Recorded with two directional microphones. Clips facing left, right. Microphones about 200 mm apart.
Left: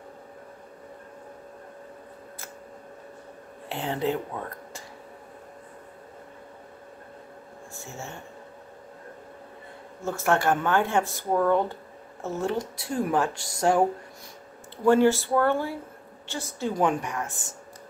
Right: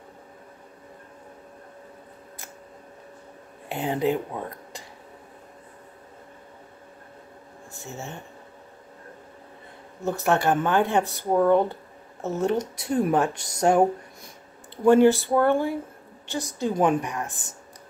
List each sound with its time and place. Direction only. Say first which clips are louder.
3.6 s speech: right 3 dB; 15° right (ahead or behind)
7.7 s speech: right 3 dB; 20° right (ahead or behind)
10.0 s speech: right 2 dB; 20° right (ahead or behind)
14.9 s speech: right 3 dB; 15° right (ahead or behind)